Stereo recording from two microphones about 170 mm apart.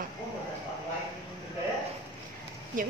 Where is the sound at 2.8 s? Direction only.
50° right (ahead or behind).